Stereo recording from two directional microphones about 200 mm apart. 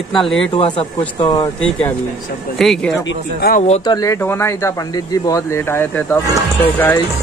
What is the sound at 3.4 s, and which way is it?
Speech, 40° left (ahead or behind).